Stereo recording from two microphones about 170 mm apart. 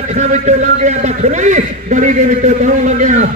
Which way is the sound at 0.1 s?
45° right (ahead or behind).